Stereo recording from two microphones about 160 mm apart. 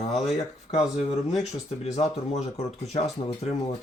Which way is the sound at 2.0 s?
45° left (ahead or behind).